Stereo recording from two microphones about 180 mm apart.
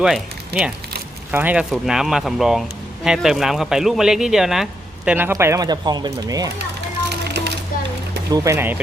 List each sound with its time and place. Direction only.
0.0 s speech: 5° right (ahead or behind); by 6.5 s 20° right (ahead or behind)
7.3 s a sound: 65° right (ahead or behind)
8.3 s speech: 15° right (ahead or behind)